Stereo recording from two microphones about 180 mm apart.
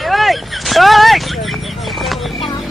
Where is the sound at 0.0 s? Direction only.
Centre (ahead or behind).